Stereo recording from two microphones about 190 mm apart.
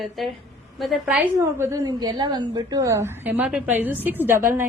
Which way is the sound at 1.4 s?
15° right (ahead or behind).